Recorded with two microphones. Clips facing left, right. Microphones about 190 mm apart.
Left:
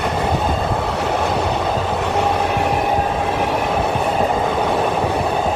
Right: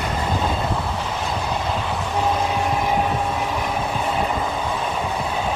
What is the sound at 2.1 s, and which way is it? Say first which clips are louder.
Vehicle: left 2 dB; 70° left (ahead or behind).